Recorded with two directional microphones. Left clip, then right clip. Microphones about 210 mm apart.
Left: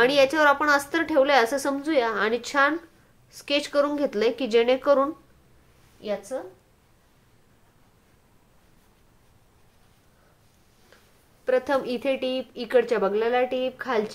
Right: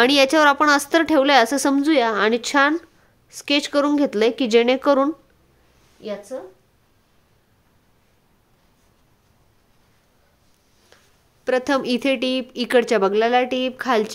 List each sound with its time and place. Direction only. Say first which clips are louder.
0.0 s a woman's voice: right 4 dB; 50° right (ahead or behind)
5.9 s a woman's voice: even; 25° right (ahead or behind)
11.4 s a woman's voice: right 3 dB; 45° right (ahead or behind)